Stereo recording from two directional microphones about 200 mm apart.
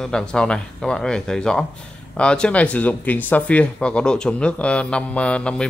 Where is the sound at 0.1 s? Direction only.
5° left (ahead or behind).